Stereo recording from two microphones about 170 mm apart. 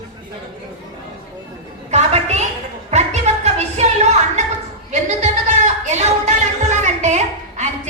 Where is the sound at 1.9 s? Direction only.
40° right (ahead or behind).